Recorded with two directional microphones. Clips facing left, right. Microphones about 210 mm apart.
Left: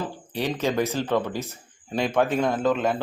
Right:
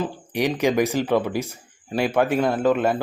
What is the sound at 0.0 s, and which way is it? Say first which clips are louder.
Speech: right 5 dB; 15° right (ahead or behind).